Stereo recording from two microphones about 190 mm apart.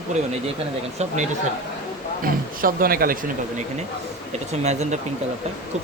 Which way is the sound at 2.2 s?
50° right (ahead or behind).